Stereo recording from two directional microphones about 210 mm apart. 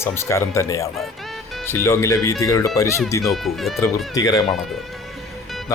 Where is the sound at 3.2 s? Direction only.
Centre (ahead or behind).